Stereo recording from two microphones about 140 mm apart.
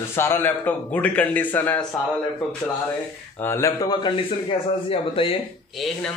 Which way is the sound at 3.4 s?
20° left (ahead or behind).